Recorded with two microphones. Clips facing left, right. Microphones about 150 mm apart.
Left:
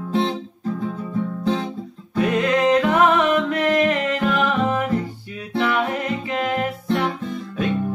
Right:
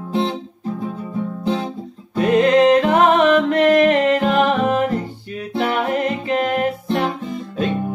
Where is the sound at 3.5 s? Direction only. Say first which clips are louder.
Right 5 dB; 50° right (ahead or behind).